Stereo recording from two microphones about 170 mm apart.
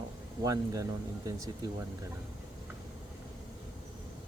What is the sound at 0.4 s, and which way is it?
Speech, 20° right (ahead or behind).